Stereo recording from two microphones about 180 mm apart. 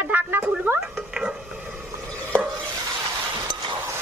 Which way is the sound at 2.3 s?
5° left (ahead or behind).